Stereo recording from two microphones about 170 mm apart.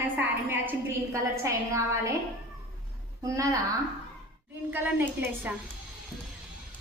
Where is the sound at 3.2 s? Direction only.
20° right (ahead or behind).